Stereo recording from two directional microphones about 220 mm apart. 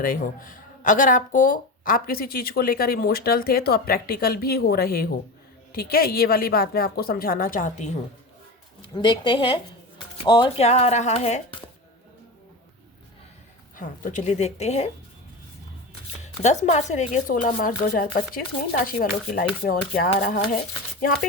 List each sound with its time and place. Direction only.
0.0 s speech: 40° left (ahead or behind)
8.8 s a woman's voice: 20° left (ahead or behind)
13.7 s speech: 35° left (ahead or behind)
16.2 s speech: 30° left (ahead or behind)